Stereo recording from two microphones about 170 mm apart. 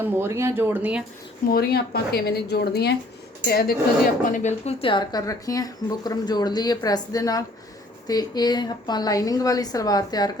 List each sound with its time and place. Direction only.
0.0 s speech: 10° right (ahead or behind)
1.5 s a woman's voice: 65° left (ahead or behind)
4.3 s speech: 45° left (ahead or behind); by 10.3 s 25° left (ahead or behind)